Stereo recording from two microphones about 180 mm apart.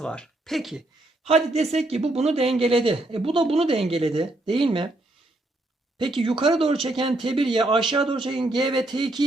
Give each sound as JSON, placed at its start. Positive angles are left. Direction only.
{"t": 0.0, "sound": "speech", "side_deg": 5}
{"t": 1.2, "sound": "speech", "side_deg": -35}
{"t": 6.0, "sound": "speech", "side_deg": -25}